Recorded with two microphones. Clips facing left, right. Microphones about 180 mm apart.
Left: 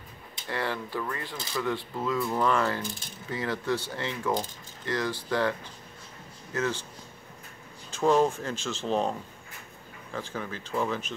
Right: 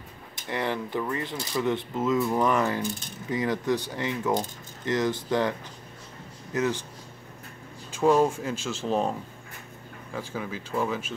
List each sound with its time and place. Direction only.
0.5 s speech: 20° right (ahead or behind)
6.5 s speech: 15° right (ahead or behind)
7.9 s speech: 10° right (ahead or behind)
10.1 s speech: 10° right (ahead or behind)